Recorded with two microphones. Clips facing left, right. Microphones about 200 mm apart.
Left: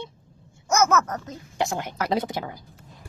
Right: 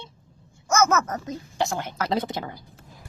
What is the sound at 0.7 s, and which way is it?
Speech, 15° left (ahead or behind).